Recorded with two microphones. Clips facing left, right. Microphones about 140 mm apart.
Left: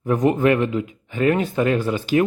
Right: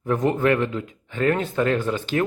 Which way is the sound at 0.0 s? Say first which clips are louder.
Left 3 dB; 15° left (ahead or behind).